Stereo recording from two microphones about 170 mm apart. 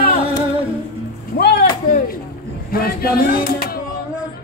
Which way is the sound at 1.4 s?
70° left (ahead or behind).